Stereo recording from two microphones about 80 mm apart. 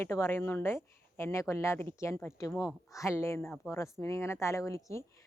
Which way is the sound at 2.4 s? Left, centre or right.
Left.